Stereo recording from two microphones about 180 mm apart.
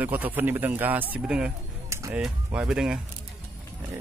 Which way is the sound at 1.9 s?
15° right (ahead or behind).